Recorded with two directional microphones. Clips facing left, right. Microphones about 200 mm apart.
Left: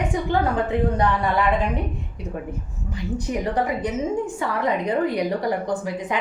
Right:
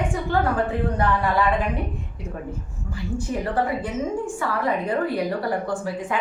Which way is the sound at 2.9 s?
20° left (ahead or behind).